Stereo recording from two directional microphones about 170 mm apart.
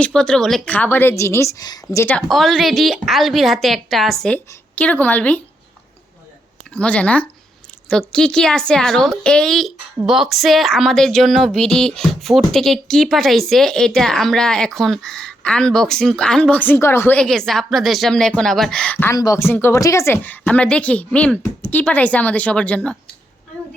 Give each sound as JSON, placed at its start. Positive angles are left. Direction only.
{"t": 0.0, "sound": "speech", "side_deg": 5}
{"t": 2.1, "sound": "a woman's voice", "side_deg": 0}
{"t": 6.7, "sound": "a woman's voice", "side_deg": 5}
{"t": 19.1, "sound": "speech", "side_deg": 20}